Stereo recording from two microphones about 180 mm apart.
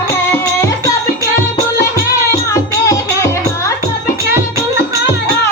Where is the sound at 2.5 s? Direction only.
15° left (ahead or behind).